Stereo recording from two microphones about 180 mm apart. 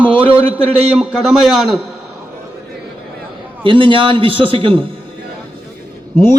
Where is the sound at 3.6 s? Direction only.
30° right (ahead or behind).